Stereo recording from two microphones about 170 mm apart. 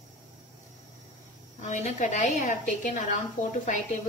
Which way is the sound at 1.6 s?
45° left (ahead or behind).